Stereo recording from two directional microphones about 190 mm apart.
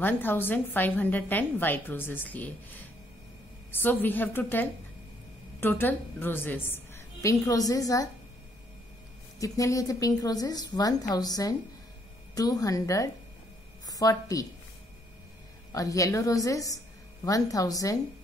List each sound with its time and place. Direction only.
0.0 s a woman's voice: 10° left (ahead or behind)
9.4 s a woman's voice: 15° left (ahead or behind)
15.7 s a woman's voice: 20° left (ahead or behind)